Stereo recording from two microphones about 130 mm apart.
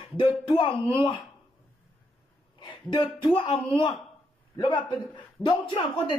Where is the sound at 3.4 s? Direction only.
40° left (ahead or behind).